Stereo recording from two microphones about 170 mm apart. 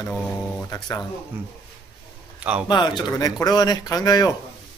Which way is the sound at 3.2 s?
20° left (ahead or behind).